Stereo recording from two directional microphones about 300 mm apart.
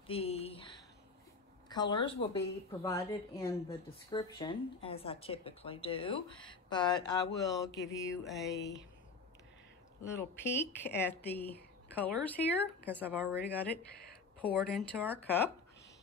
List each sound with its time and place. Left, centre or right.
0.0 s a woman's voice: centre
8.3 s speech: centre
10.0 s a woman's voice: centre
13.0 s speech: centre
14.4 s a woman's voice: centre